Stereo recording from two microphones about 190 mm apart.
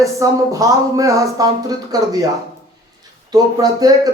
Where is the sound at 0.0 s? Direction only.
15° right (ahead or behind).